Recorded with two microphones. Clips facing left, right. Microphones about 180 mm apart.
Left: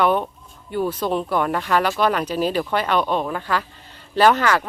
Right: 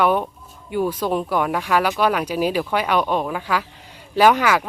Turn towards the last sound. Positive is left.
turn(degrees=-10)  # may be behind; listen again after turning